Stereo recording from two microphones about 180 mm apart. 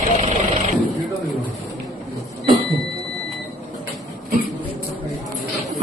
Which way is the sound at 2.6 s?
Centre (ahead or behind).